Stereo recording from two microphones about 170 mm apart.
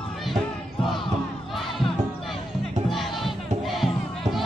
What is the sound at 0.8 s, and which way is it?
Battle cry, centre (ahead or behind).